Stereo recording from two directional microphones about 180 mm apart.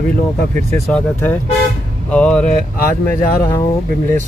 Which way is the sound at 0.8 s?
5° left (ahead or behind).